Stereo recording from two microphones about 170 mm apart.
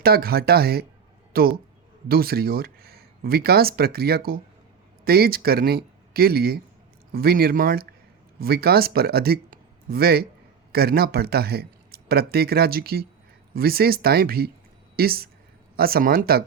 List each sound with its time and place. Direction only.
0.0 s a man's voice: 65° right (ahead or behind)